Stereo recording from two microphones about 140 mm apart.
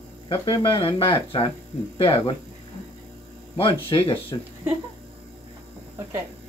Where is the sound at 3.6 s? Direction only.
35° left (ahead or behind).